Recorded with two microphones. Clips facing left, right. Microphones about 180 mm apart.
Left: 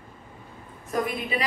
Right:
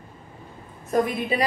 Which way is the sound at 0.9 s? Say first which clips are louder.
Right 5 dB; 40° right (ahead or behind).